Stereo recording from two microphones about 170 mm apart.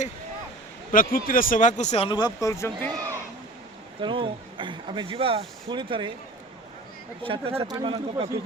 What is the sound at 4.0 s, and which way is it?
Speech, 30° right (ahead or behind).